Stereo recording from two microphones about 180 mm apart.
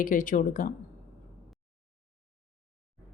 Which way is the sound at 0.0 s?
45° left (ahead or behind).